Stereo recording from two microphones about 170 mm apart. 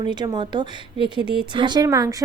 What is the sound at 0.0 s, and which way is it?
Speech, 25° right (ahead or behind).